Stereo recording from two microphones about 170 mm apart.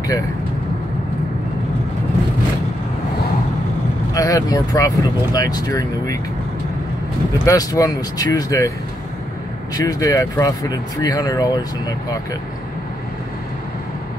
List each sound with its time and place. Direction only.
4.1 s speech: 20° left (ahead or behind)
7.4 s speech: 20° left (ahead or behind)
9.8 s speech: 20° left (ahead or behind)